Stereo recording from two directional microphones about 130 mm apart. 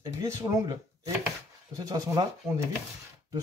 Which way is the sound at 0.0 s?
25° right (ahead or behind).